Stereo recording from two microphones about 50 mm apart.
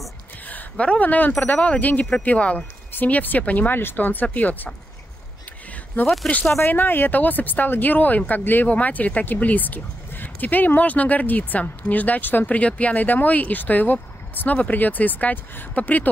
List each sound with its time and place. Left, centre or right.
0.5 s a sound: left
0.8 s speech: left
2.3 s speech: left
2.9 s speech: left
6.0 s speech: left